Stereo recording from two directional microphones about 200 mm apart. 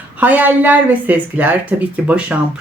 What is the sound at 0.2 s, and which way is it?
A woman's voice, 10° right (ahead or behind).